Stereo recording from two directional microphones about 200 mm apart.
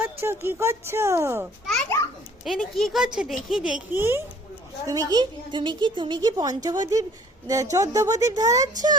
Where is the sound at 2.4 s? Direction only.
Centre (ahead or behind).